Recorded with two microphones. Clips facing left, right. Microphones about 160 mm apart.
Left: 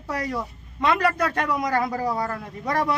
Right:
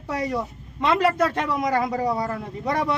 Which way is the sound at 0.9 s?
25° right (ahead or behind).